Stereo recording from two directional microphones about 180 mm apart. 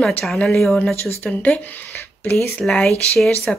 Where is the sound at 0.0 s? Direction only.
Centre (ahead or behind).